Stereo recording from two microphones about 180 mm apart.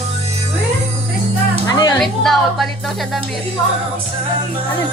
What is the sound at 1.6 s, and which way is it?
Music, 20° left (ahead or behind).